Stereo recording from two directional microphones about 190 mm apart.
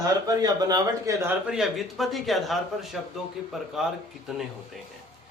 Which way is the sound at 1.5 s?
Centre (ahead or behind).